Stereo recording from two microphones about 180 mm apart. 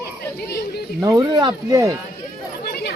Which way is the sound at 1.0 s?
20° right (ahead or behind).